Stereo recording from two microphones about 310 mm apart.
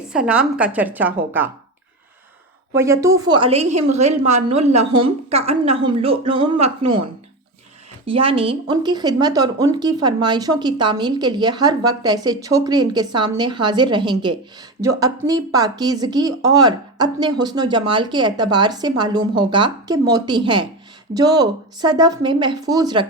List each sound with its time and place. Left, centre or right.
0.1 s a woman's voice: centre
2.7 s a woman's voice: centre
4.8 s a woman's voice: right
5.0 s speech: centre
8.0 s speech: centre